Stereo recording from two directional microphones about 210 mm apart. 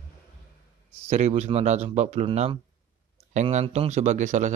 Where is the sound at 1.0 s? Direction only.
30° right (ahead or behind).